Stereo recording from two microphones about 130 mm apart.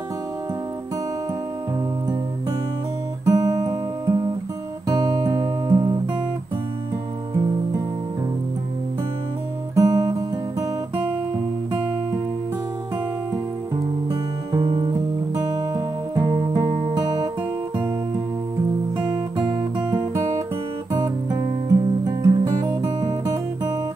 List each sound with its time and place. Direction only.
3.3 s guitar: 25° right (ahead or behind)
4.8 s music: 30° right (ahead or behind)
9.8 s music: 25° right (ahead or behind)
14.5 s music: 35° right (ahead or behind)
18.9 s guitar: 35° right (ahead or behind)
20.9 s music: 25° right (ahead or behind)